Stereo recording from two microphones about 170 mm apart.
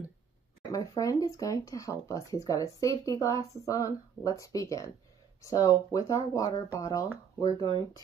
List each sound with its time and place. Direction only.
0.7 s speech: 20° left (ahead or behind)